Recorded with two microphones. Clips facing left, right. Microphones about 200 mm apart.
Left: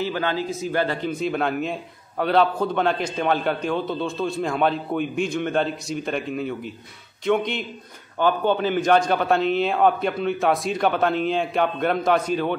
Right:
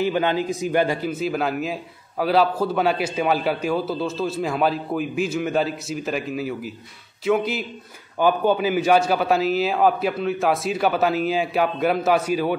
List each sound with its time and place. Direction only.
0.0 s a man's voice: 15° right (ahead or behind)